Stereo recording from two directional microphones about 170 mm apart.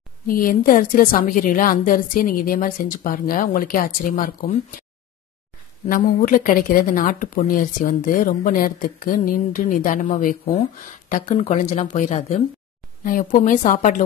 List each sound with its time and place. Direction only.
0.3 s a woman's voice: 55° left (ahead or behind)
5.9 s speech: 55° left (ahead or behind)
13.0 s a woman's voice: 55° left (ahead or behind)